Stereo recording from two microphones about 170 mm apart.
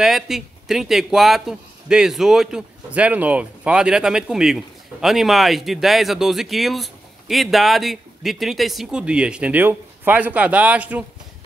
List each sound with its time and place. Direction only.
0.0 s speech: centre (ahead or behind)